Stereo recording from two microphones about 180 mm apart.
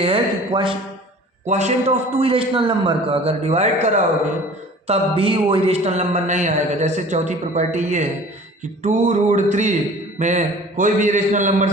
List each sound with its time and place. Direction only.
0.0 s speech: 30° right (ahead or behind)
1.5 s a man's voice: 40° right (ahead or behind)
4.9 s a man's voice: 30° right (ahead or behind)